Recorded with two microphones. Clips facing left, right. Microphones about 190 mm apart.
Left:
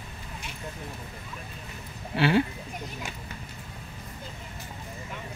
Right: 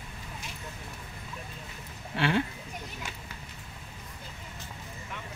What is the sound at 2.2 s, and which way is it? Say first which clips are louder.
Speech: left 5 dB; 5° left (ahead or behind).